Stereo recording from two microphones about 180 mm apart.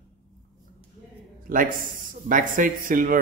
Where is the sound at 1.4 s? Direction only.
50° right (ahead or behind).